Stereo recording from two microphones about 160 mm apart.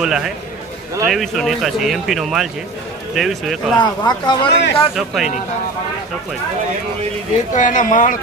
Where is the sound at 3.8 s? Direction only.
30° left (ahead or behind).